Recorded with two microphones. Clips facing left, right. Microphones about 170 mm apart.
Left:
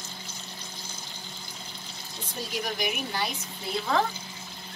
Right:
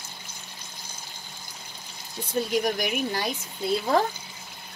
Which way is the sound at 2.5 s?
50° right (ahead or behind).